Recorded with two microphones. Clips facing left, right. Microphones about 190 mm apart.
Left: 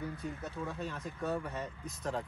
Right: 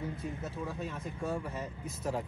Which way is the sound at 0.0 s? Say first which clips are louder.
Right 2 dB; 25° right (ahead or behind).